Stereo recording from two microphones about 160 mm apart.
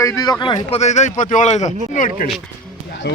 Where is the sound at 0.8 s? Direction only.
45° left (ahead or behind).